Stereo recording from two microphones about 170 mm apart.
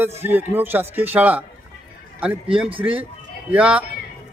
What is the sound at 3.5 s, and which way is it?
Speech, 10° right (ahead or behind).